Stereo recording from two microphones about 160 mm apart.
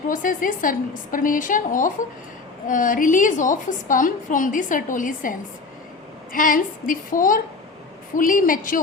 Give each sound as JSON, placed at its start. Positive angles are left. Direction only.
{"t": 0.1, "sound": "a woman's voice", "side_deg": 55}